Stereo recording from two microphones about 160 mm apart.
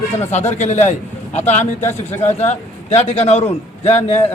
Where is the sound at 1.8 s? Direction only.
15° left (ahead or behind).